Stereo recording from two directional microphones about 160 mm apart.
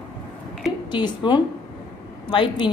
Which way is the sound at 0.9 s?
30° left (ahead or behind).